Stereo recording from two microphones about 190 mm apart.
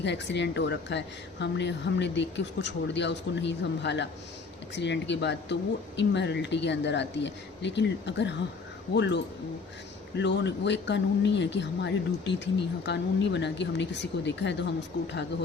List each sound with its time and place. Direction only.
0.0 s a woman's voice: 65° left (ahead or behind)